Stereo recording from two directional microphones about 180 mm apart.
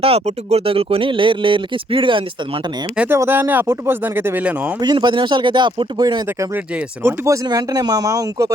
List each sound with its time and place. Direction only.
0.0 s speech: 35° right (ahead or behind)
3.0 s speech: 10° right (ahead or behind)
4.8 s speech: 25° right (ahead or behind)